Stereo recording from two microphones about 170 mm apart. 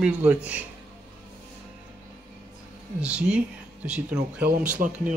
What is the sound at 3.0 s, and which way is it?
Speech, 5° right (ahead or behind).